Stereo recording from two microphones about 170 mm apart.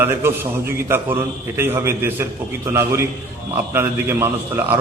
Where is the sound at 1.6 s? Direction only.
15° right (ahead or behind).